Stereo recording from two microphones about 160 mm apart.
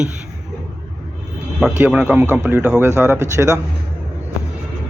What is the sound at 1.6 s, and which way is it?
Speech, 5° right (ahead or behind).